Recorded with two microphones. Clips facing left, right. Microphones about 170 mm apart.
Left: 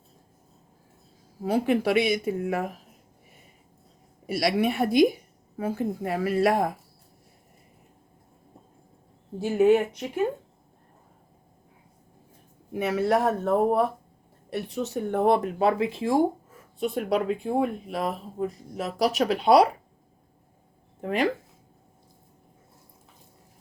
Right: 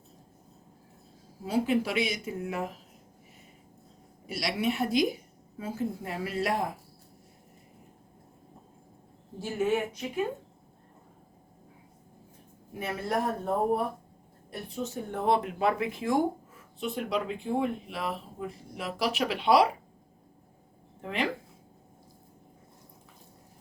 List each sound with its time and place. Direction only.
1.5 s speech: 60° left (ahead or behind)
4.3 s speech: 55° left (ahead or behind)
9.4 s speech: 65° left (ahead or behind)
12.7 s speech: 75° left (ahead or behind); by 15.4 s 60° left (ahead or behind)
15.5 s speech: 30° left (ahead or behind)
16.9 s speech: 50° left (ahead or behind)
21.0 s speech: 45° left (ahead or behind)